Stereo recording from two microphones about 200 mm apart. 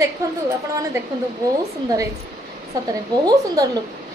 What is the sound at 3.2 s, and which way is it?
Speech, 20° right (ahead or behind).